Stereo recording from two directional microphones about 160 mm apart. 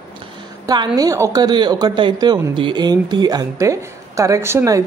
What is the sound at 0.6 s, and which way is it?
A woman's voice, 25° right (ahead or behind).